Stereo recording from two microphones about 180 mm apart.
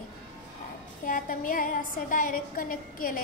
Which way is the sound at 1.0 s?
50° left (ahead or behind).